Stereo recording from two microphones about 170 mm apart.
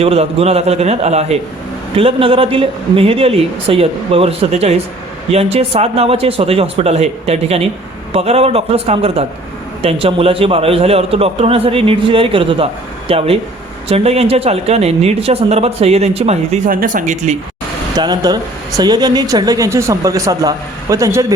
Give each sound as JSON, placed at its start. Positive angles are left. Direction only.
{"t": 0.0, "sound": "a man's voice", "side_deg": -35}
{"t": 16.6, "sound": "speech", "side_deg": -55}
{"t": 17.9, "sound": "speech", "side_deg": -25}